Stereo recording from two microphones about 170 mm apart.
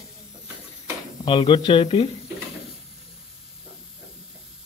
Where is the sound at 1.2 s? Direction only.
30° left (ahead or behind).